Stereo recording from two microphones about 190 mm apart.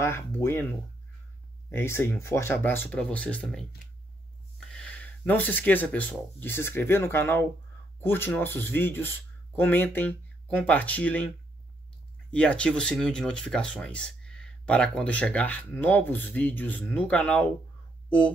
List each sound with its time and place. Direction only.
0.0 s speech: 15° left (ahead or behind)
1.7 s speech: 10° left (ahead or behind)
12.3 s speech: 5° left (ahead or behind)